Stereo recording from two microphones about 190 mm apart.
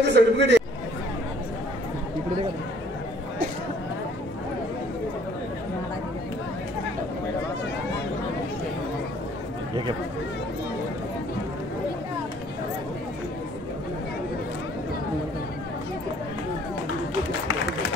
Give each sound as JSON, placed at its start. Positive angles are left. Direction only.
{"t": 0.0, "sound": "speech", "side_deg": -65}